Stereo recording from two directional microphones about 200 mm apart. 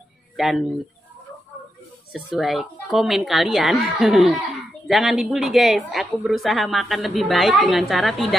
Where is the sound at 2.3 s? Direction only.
Centre (ahead or behind).